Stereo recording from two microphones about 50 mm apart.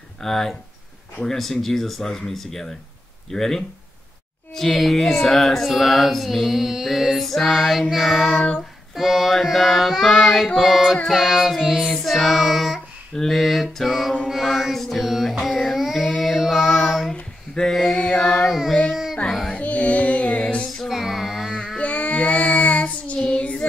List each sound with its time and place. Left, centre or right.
0.2 s speech: centre
4.6 s music: centre
8.4 s child singing: left
8.9 s music: centre
15.8 s child singing: centre
17.1 s a sound: centre
17.6 s a sound: centre
18.0 s carnatic music: centre
18.5 s child singing: centre
19.2 s music: centre
19.5 s music: left
20.9 s female singing: centre
21.7 s child singing: left